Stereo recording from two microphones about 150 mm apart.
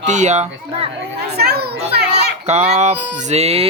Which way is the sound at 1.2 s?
90° right.